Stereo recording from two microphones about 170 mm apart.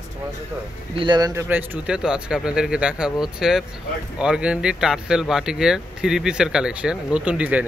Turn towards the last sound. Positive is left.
turn(degrees=-10)  # may be behind; listen again after turning